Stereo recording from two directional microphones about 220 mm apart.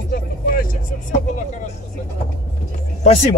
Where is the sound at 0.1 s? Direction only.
40° left (ahead or behind).